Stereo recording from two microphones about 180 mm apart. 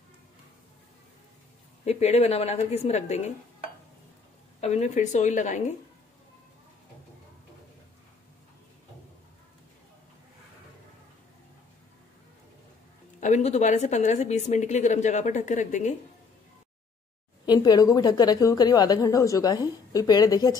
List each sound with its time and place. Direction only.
1.9 s a woman's voice: 35° left (ahead or behind)
4.6 s a woman's voice: 40° left (ahead or behind)
13.2 s a woman's voice: 40° left (ahead or behind)
17.5 s a woman's voice: 20° left (ahead or behind)